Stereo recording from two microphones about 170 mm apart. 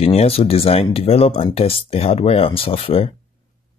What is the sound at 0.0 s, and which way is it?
Speech, 35° left (ahead or behind).